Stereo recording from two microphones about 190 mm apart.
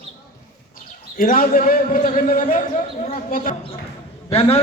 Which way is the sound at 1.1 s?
45° left (ahead or behind).